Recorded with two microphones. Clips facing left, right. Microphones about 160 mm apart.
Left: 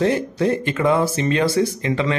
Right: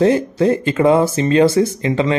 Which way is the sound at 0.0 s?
30° right (ahead or behind).